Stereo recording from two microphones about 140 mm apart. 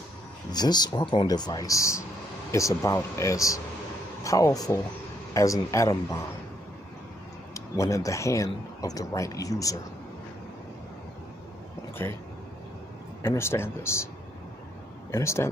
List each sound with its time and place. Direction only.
0.5 s speech: 30° left (ahead or behind)
7.5 s speech: 20° left (ahead or behind)
13.2 s speech: 20° left (ahead or behind)
15.0 s speech: 20° left (ahead or behind)